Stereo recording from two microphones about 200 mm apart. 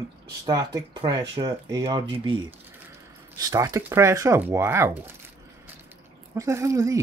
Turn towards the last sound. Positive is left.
turn(degrees=-15)  # may be behind; listen again after turning